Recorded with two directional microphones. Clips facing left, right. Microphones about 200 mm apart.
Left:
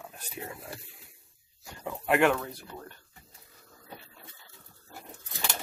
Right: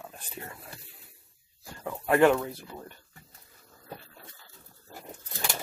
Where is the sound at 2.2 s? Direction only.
20° right (ahead or behind).